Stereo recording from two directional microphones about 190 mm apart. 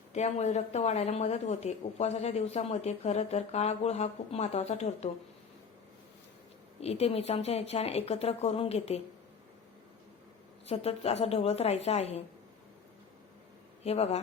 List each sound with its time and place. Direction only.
0.1 s speech: 35° left (ahead or behind)
6.7 s speech: 35° left (ahead or behind)
10.7 s speech: 35° left (ahead or behind)
13.8 s speech: 35° left (ahead or behind)